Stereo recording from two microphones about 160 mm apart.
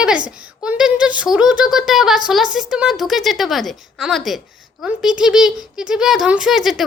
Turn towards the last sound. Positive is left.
turn(degrees=0)  # may be behind; listen again after turning